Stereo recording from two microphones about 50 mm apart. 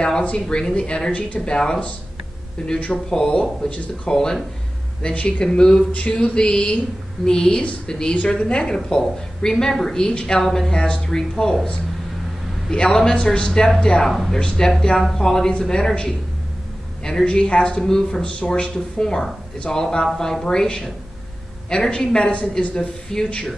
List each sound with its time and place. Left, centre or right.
0.2 s speech: left
3.1 s a man's voice: centre
5.0 s a man's voice: left
10.4 s speech: centre
10.7 s a man's voice: centre
12.7 s a man's voice: centre
23.0 s a man's voice: centre